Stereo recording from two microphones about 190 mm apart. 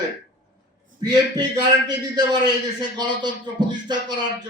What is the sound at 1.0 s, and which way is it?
A man's voice, 20° right (ahead or behind).